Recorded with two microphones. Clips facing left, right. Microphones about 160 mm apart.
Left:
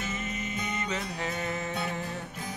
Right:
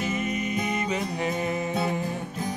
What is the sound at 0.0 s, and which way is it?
Music, 15° right (ahead or behind).